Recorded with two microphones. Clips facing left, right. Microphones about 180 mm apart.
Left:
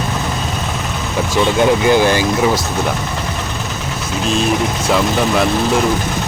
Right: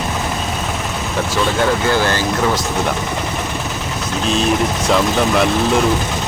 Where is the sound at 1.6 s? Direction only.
15° left (ahead or behind).